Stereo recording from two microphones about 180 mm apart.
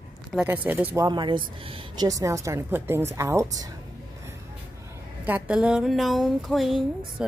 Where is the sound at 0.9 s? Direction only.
25° right (ahead or behind).